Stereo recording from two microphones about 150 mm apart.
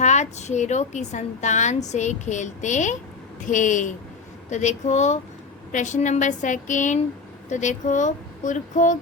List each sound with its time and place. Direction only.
0.0 s a woman's voice: 50° left (ahead or behind)